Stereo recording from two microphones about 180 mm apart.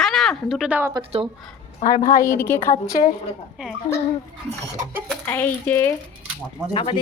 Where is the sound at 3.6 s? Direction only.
5° right (ahead or behind).